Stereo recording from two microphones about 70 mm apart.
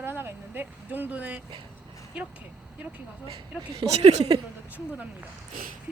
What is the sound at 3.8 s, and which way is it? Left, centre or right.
Speech, right.